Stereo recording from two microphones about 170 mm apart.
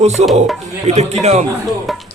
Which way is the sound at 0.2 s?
40° right (ahead or behind).